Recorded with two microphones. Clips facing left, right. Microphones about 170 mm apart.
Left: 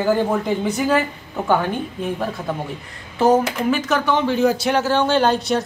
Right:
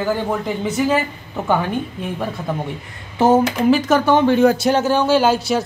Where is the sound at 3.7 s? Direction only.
40° right (ahead or behind); by 4.7 s 55° right (ahead or behind).